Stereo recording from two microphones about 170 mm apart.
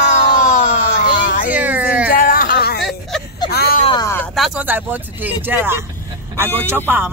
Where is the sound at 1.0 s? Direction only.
50° left (ahead or behind).